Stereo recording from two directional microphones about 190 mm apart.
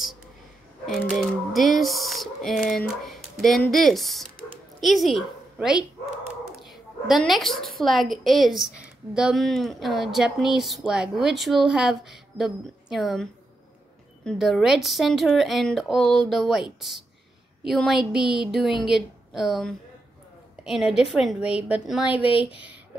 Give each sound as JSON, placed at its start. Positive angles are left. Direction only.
{"t": 0.8, "sound": "a woman's voice", "side_deg": 0}
{"t": 22.2, "sound": "speech", "side_deg": 30}